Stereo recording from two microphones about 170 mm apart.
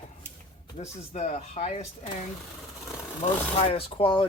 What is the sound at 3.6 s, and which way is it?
Speech, 35° left (ahead or behind).